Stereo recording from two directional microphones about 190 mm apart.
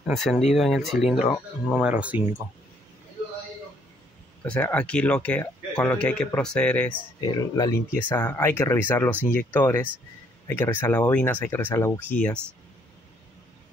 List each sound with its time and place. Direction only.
0.0 s speech: centre (ahead or behind)
4.4 s speech: 10° left (ahead or behind)
7.2 s speech: 20° left (ahead or behind)